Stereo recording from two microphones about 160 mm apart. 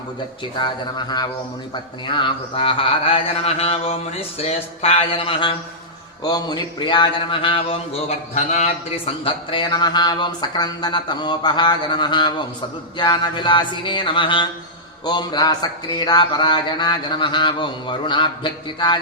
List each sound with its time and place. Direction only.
0.6 s speech: 25° left (ahead or behind)